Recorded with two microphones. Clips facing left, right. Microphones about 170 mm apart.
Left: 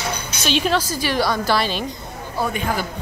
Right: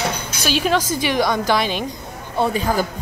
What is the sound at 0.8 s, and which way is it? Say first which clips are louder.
A woman's voice: right 2 dB; 20° right (ahead or behind).